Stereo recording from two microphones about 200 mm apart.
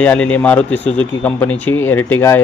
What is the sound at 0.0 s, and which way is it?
A man's voice, 5° left (ahead or behind).